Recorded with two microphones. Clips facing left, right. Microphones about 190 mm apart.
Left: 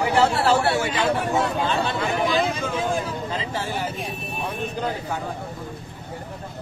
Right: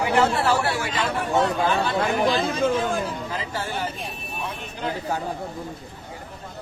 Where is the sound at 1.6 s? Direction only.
25° left (ahead or behind).